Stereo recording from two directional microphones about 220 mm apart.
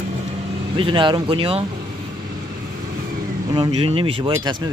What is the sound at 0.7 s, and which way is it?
Speech, 25° right (ahead or behind).